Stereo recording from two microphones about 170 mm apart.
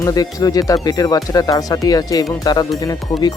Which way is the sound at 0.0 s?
20° left (ahead or behind).